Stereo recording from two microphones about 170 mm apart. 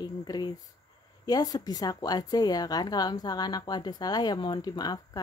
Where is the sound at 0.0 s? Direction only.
25° left (ahead or behind).